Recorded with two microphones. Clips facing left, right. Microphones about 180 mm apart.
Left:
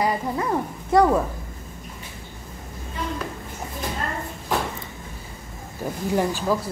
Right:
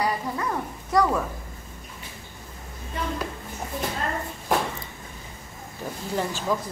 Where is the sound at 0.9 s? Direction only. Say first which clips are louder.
Left 5 dB; 30° left (ahead or behind).